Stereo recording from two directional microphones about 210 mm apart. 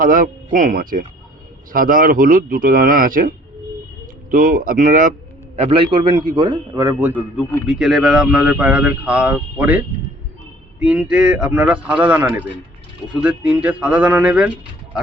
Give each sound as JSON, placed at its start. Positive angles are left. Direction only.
{"t": 0.0, "sound": "a man's voice", "side_deg": -40}